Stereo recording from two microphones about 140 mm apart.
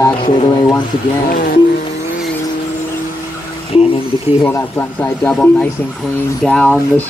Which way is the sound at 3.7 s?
45° left (ahead or behind).